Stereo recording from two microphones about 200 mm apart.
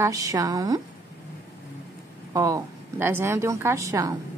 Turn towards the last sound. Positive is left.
turn(degrees=-15)  # may be behind; listen again after turning